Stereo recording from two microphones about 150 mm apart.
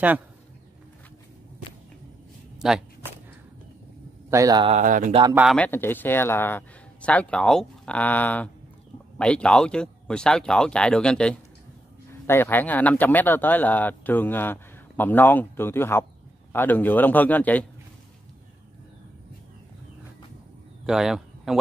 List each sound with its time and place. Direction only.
2.6 s speech: 5° right (ahead or behind)
4.3 s speech: 25° right (ahead or behind)
4.8 s speech: 60° right (ahead or behind)
5.3 s speech: 5° right (ahead or behind)
5.6 s speech: 15° left (ahead or behind)
20.8 s speech: 5° right (ahead or behind)